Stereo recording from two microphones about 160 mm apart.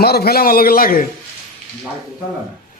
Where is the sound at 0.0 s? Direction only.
80° left.